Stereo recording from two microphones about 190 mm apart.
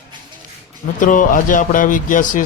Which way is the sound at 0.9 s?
45° left (ahead or behind).